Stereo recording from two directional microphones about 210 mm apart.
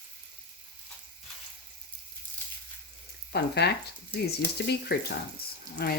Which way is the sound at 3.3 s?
50° left (ahead or behind).